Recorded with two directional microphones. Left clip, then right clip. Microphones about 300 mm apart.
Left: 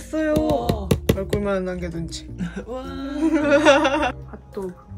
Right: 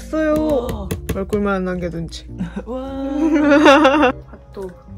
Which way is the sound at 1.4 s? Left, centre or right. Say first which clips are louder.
Right 4 dB; centre.